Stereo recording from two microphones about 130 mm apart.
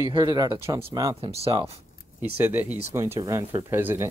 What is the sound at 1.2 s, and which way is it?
Speech, 50° right (ahead or behind).